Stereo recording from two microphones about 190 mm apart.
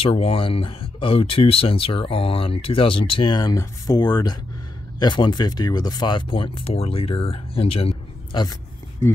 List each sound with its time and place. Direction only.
0.0 s speech: 30° left (ahead or behind)